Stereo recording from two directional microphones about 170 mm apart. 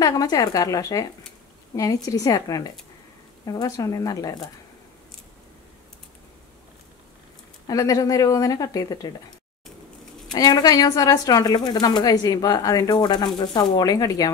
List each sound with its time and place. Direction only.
0.0 s a woman's voice: 20° left (ahead or behind)
7.6 s a woman's voice: 20° left (ahead or behind)
10.3 s a woman's voice: 25° left (ahead or behind)